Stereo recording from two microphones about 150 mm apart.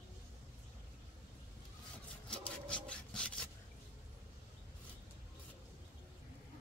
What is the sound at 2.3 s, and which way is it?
Rub, 10° left (ahead or behind).